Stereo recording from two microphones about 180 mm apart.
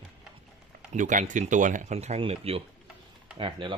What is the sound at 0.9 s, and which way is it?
A man's voice, 45° right (ahead or behind).